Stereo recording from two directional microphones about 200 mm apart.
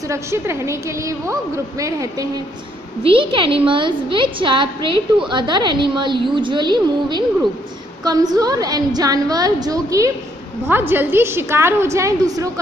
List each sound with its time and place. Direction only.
0.1 s a woman's voice: 15° right (ahead or behind)